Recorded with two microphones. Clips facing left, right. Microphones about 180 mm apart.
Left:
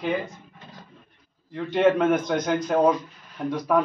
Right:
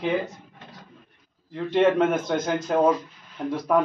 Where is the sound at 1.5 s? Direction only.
Centre (ahead or behind).